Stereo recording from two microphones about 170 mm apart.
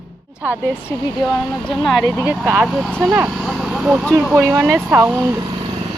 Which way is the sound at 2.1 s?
10° right (ahead or behind).